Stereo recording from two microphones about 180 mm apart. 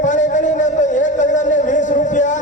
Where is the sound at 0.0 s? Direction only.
45° left (ahead or behind).